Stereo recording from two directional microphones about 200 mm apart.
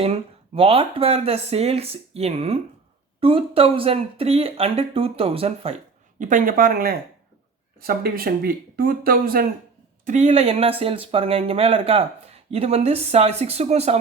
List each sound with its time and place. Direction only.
0.0 s speech: 30° right (ahead or behind)
6.1 s speech: 40° right (ahead or behind)
10.1 s speech: 35° right (ahead or behind)